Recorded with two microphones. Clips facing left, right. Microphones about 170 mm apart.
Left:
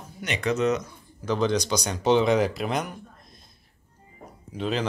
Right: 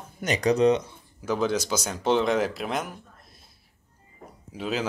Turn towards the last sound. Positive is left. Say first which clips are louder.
# left 2 dB
turn(degrees=-5)  # may be behind; listen again after turning